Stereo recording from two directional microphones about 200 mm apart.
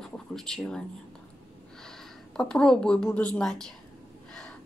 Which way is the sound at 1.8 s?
5° left (ahead or behind).